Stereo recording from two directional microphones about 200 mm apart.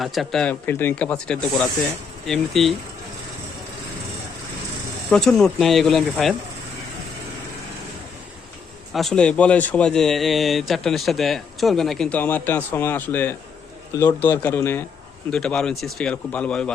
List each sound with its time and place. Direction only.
0.0 s speech: centre (ahead or behind)
5.1 s speech: 5° left (ahead or behind)
8.9 s speech: centre (ahead or behind)